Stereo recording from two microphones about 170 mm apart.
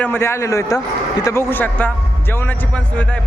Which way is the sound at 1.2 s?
15° left (ahead or behind).